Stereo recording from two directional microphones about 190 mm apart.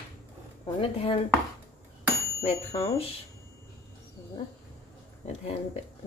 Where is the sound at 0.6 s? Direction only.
30° left (ahead or behind).